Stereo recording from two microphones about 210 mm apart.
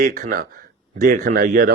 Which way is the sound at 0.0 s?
40° right (ahead or behind).